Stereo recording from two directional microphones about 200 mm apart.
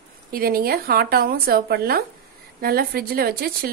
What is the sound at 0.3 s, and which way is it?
Speech, 50° right (ahead or behind).